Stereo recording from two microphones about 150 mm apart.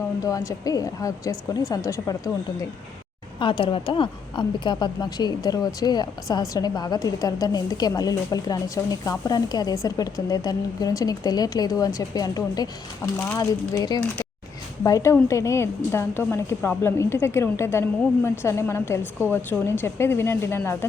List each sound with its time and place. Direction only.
0.2 s a woman's voice: 20° left (ahead or behind)
3.3 s a woman's voice: 35° left (ahead or behind)
13.1 s speech: 15° left (ahead or behind)
13.4 s a woman's voice: 25° left (ahead or behind)